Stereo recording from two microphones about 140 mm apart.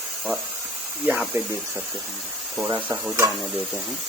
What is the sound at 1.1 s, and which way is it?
Speech, 10° right (ahead or behind).